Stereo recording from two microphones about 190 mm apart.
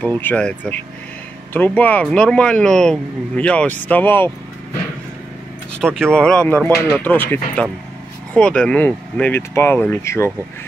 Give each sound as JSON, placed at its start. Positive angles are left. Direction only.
{"t": 0.2, "sound": "speech", "side_deg": 5}
{"t": 5.8, "sound": "speech", "side_deg": 5}